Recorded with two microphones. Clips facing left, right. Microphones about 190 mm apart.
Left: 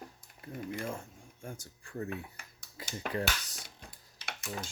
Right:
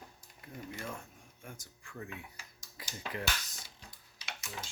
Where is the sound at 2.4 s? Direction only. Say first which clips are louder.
Left 1 dB; 60° left (ahead or behind).